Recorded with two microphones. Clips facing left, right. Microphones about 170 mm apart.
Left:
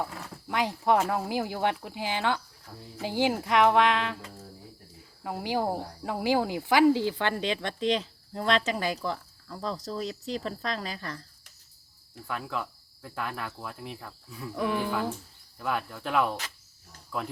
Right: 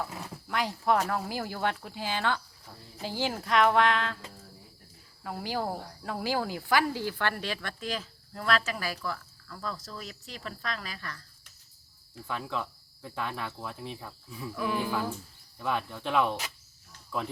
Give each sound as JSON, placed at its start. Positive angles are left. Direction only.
{"t": 0.4, "sound": "speech", "side_deg": 15}
{"t": 5.2, "sound": "speech", "side_deg": 15}
{"t": 12.3, "sound": "speech", "side_deg": 5}
{"t": 14.5, "sound": "speech", "side_deg": 25}
{"t": 15.5, "sound": "speech", "side_deg": 0}